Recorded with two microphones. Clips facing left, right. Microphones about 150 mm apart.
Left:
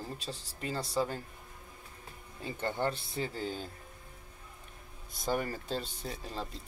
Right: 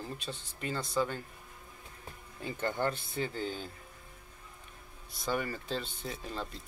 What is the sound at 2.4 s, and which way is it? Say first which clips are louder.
Speech: right 1 dB; 30° left (ahead or behind).